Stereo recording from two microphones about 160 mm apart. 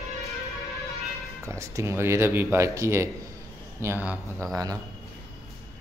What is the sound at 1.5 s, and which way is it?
Speech, 20° right (ahead or behind).